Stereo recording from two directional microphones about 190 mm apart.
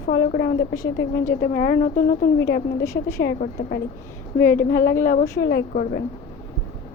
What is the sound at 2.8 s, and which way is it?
Speech, 15° left (ahead or behind).